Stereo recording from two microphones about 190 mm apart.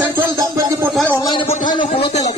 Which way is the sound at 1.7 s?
25° left (ahead or behind).